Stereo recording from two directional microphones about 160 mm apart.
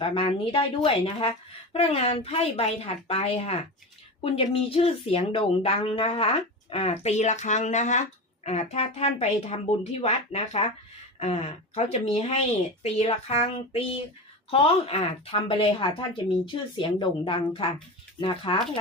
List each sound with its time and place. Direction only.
0.0 s speech: 35° left (ahead or behind)